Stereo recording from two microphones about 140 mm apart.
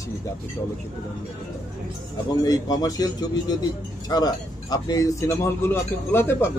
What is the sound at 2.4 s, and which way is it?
A man's voice, 25° left (ahead or behind).